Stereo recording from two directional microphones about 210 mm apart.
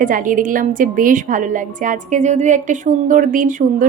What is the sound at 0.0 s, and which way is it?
A woman's voice, 40° right (ahead or behind).